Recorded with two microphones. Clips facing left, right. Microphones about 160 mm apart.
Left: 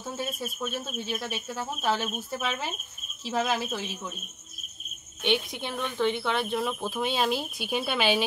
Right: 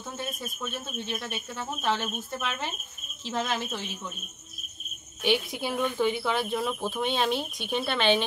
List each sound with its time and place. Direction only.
0.7 s speech: 5° left (ahead or behind)
5.2 s speech: 5° right (ahead or behind)